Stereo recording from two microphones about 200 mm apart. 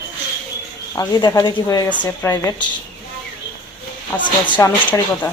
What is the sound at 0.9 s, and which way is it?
Speech, 20° left (ahead or behind).